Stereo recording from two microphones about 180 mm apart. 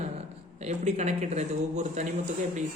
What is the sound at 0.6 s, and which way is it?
A man's voice, 40° right (ahead or behind).